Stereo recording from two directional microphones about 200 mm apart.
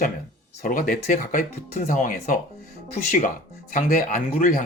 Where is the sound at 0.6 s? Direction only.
45° left (ahead or behind).